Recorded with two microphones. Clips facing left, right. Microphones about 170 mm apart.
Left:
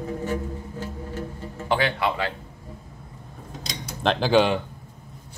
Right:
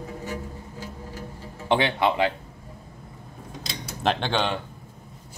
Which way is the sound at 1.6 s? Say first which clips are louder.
Right 2 dB; 25° right (ahead or behind).